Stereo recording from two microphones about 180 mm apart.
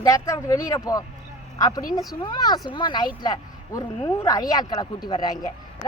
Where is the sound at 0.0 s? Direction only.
20° left (ahead or behind).